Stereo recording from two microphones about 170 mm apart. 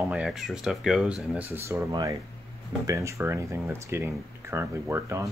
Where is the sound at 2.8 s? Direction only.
15° right (ahead or behind).